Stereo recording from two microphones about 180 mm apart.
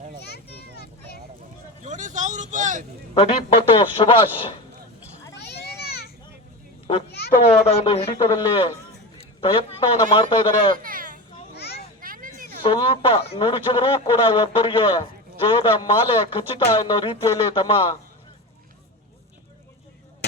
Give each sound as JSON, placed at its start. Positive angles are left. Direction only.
{"t": 0.2, "sound": "children playing", "side_deg": 65}
{"t": 1.8, "sound": "speech", "side_deg": -45}
{"t": 3.2, "sound": "a man's voice", "side_deg": 30}
{"t": 5.3, "sound": "children playing", "side_deg": 65}
{"t": 7.1, "sound": "children playing", "side_deg": 65}
{"t": 7.6, "sound": "a man's voice", "side_deg": 35}
{"t": 10.8, "sound": "children playing", "side_deg": -50}
{"t": 11.5, "sound": "children playing", "side_deg": 65}
{"t": 11.9, "sound": "a sound", "side_deg": -50}
{"t": 12.6, "sound": "a man's voice", "side_deg": 30}